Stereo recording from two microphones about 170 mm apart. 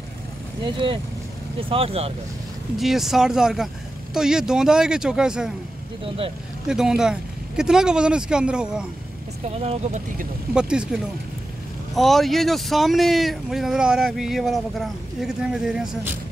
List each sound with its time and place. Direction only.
0.7 s speech: 30° right (ahead or behind)
2.8 s speech: centre (ahead or behind)
6.7 s speech: 5° right (ahead or behind)
9.6 s speech: 40° right (ahead or behind)
10.5 s speech: 5° right (ahead or behind)